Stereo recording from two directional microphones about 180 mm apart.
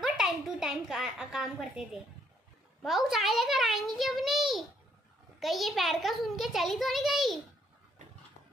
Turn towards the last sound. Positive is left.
turn(degrees=0)  # may be behind; listen again after turning